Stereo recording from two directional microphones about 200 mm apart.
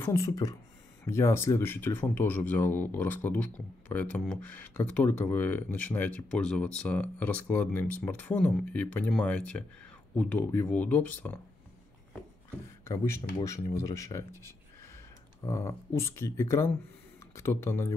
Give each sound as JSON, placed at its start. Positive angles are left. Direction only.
{"t": 0.0, "sound": "speech", "side_deg": 15}
{"t": 12.8, "sound": "speech", "side_deg": 15}